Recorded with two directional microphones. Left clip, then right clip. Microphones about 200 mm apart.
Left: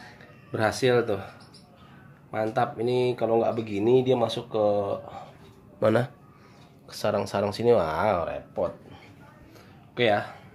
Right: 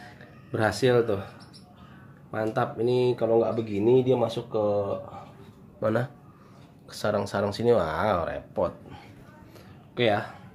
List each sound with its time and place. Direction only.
0.5 s speech: 5° left (ahead or behind)
2.3 s speech: 10° left (ahead or behind)
6.9 s speech: 10° left (ahead or behind)
9.9 s speech: 10° left (ahead or behind)